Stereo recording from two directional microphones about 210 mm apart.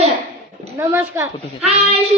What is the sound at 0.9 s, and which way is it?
Speech, 10° right (ahead or behind).